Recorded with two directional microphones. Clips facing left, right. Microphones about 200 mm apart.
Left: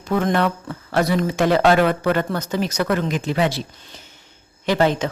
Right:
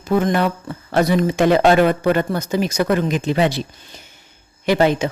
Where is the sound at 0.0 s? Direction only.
5° right (ahead or behind).